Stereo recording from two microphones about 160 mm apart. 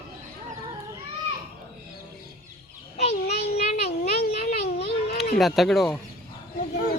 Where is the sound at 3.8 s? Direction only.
40° left (ahead or behind).